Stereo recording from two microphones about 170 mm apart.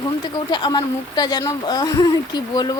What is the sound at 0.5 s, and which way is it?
Speech, 25° left (ahead or behind).